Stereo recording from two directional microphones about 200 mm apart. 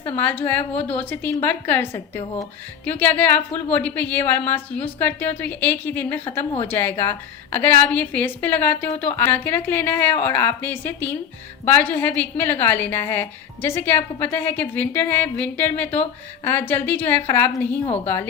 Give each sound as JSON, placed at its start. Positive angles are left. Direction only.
{"t": 0.2, "sound": "a woman's voice", "side_deg": 10}
{"t": 17.8, "sound": "a woman's voice", "side_deg": 30}